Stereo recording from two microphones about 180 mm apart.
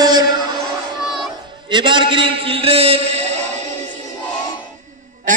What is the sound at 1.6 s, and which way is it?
A man's voice, 25° right (ahead or behind).